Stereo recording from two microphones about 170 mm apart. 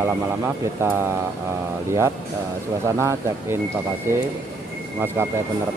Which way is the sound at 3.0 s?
15° right (ahead or behind).